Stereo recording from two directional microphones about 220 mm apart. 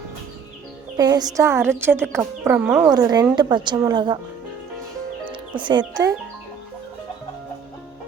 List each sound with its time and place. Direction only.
0.9 s a woman's voice: 15° right (ahead or behind)
5.3 s music: 20° right (ahead or behind)
5.9 s a woman's voice: 15° right (ahead or behind)